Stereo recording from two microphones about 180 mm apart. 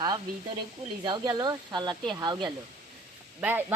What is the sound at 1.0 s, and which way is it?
Speech, 25° right (ahead or behind).